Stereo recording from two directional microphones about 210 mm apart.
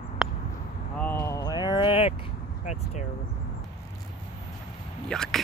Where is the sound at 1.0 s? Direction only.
10° left (ahead or behind); by 2.8 s 30° left (ahead or behind).